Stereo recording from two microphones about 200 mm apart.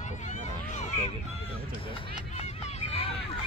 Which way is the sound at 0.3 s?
35° left (ahead or behind).